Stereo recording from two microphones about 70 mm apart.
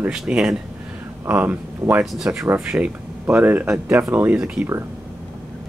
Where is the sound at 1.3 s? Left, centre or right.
Right.